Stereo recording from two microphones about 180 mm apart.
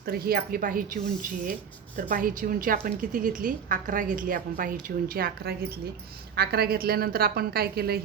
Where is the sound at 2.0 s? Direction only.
50° right (ahead or behind).